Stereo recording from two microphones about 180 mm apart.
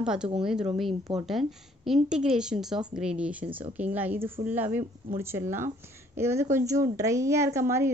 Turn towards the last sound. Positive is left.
turn(degrees=-15)  # may be behind; listen again after turning